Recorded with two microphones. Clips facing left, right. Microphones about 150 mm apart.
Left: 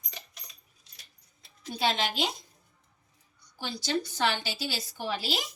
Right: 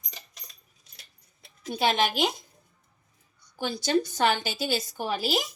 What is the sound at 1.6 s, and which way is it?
Speech, 55° right (ahead or behind).